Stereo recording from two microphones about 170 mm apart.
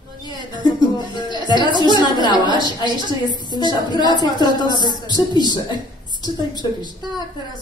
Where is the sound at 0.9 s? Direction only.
25° left (ahead or behind).